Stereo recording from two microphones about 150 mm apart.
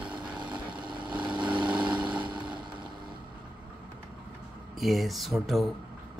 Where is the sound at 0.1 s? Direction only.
30° right (ahead or behind).